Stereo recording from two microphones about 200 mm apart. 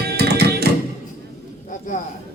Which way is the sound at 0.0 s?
55° right (ahead or behind).